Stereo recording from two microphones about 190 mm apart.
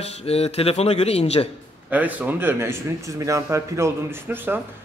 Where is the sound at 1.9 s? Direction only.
10° right (ahead or behind).